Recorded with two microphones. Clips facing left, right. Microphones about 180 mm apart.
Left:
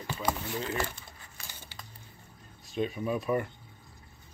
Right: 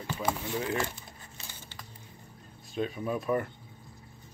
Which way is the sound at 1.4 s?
25° right (ahead or behind).